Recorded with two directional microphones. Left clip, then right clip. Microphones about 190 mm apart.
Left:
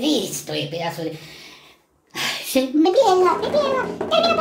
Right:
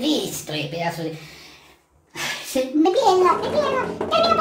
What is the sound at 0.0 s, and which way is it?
Speech, 20° left (ahead or behind).